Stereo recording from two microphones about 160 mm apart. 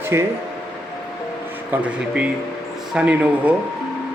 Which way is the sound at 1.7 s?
10° right (ahead or behind).